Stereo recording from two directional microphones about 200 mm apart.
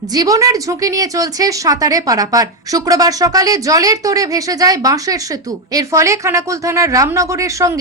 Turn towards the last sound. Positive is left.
turn(degrees=-15)  # may be behind; listen again after turning